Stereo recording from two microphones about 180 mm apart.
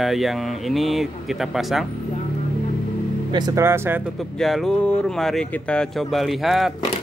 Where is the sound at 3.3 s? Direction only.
20° right (ahead or behind).